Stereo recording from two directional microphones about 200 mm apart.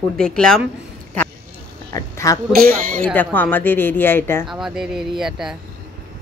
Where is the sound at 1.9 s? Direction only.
15° left (ahead or behind).